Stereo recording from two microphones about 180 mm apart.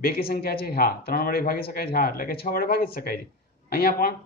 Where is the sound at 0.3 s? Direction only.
60° left (ahead or behind).